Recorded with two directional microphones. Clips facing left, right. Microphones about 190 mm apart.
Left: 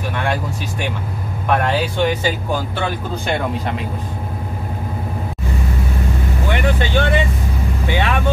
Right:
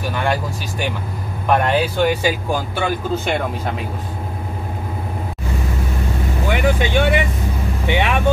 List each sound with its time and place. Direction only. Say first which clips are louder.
0.1 s speech: right 1 dB; centre (ahead or behind)
6.5 s speech: right 1 dB; 10° right (ahead or behind)